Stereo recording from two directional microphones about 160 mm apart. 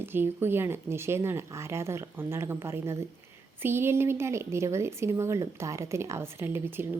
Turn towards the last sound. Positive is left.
turn(degrees=-15)  # may be behind; listen again after turning